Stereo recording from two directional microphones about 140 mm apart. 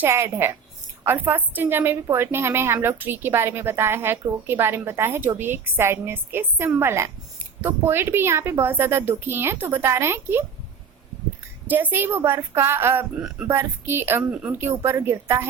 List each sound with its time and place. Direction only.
0.0 s a woman's voice: 20° right (ahead or behind)
11.7 s a woman's voice: 15° right (ahead or behind)